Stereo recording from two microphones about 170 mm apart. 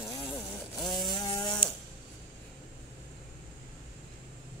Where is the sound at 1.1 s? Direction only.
25° left (ahead or behind).